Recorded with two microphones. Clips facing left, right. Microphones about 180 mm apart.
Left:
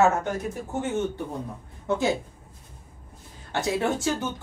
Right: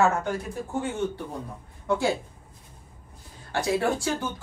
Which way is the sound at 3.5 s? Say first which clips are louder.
Right 1 dB; 20° left (ahead or behind).